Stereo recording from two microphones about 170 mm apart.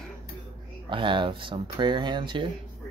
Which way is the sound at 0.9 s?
30° right (ahead or behind).